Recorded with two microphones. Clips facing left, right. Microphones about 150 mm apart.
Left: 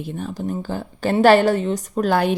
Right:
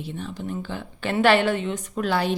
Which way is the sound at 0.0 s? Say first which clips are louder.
Left 5 dB; 45° left (ahead or behind).